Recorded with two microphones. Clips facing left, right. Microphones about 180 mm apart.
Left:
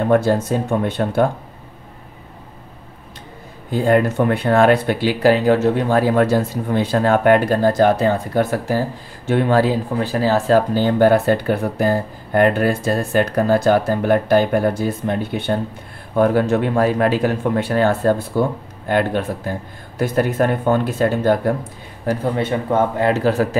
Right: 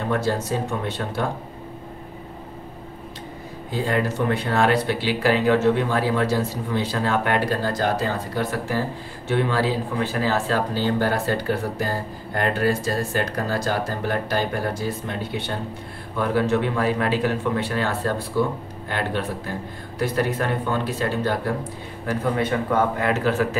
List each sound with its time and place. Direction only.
0.1 s speech: 50° left (ahead or behind)
3.7 s speech: 55° left (ahead or behind)
10.1 s a man's voice: 35° left (ahead or behind)
10.7 s speech: 55° left (ahead or behind)
22.0 s a man's voice: 25° left (ahead or behind)